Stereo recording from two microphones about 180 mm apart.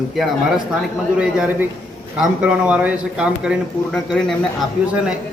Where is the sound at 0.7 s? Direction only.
5° right (ahead or behind).